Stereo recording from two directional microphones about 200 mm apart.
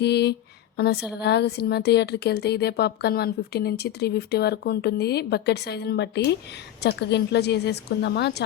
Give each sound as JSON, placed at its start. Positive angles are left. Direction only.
{"t": 0.0, "sound": "a woman's voice", "side_deg": 55}